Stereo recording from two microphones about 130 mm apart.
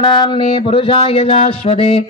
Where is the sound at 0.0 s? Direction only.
40° left (ahead or behind).